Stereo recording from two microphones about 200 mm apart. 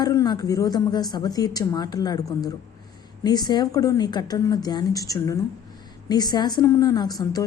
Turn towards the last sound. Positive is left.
turn(degrees=20)  # may be behind; listen again after turning